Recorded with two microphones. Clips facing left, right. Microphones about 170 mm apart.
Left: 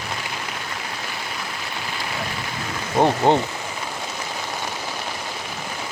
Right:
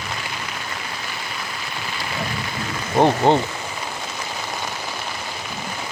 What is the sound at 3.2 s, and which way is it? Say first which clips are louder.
Speech: even; 15° right (ahead or behind).